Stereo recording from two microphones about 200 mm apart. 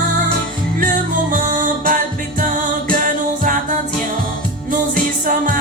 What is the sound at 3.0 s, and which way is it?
Music, 40° right (ahead or behind).